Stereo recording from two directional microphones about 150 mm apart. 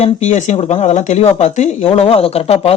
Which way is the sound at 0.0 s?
50° left (ahead or behind).